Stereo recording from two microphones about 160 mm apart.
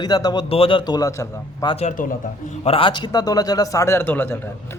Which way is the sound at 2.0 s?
55° left (ahead or behind).